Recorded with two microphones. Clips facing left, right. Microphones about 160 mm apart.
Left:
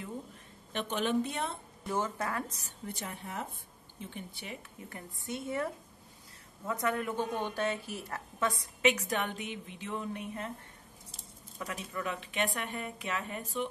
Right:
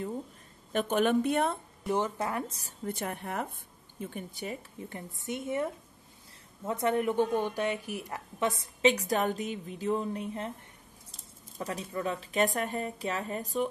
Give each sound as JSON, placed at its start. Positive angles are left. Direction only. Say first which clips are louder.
{"t": 0.7, "sound": "a woman's voice", "louder": "right 5 dB", "side_deg": -50}
{"t": 1.9, "sound": "a woman's voice", "louder": "right 4 dB", "side_deg": -20}
{"t": 2.9, "sound": "speech", "louder": "right 7 dB", "side_deg": -55}
{"t": 4.0, "sound": "a woman's voice", "louder": "right 6 dB", "side_deg": -45}
{"t": 4.8, "sound": "a woman's voice", "louder": "right 4 dB", "side_deg": -20}
{"t": 8.9, "sound": "speech", "louder": "right 5 dB", "side_deg": -40}
{"t": 11.5, "sound": "speech", "louder": "right 4 dB", "side_deg": -35}